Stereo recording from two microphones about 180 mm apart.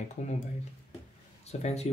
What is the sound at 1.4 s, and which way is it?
Speech, 35° left (ahead or behind).